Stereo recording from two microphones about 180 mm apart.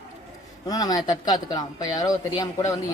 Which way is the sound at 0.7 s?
20° left (ahead or behind).